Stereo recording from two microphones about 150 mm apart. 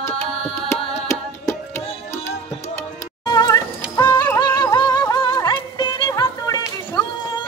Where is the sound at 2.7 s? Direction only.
25° left (ahead or behind).